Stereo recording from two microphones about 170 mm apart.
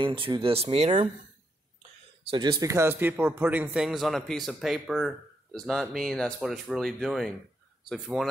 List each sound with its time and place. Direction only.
0.0 s speech: 30° right (ahead or behind)
2.2 s speech: 30° right (ahead or behind); by 8.3 s centre (ahead or behind)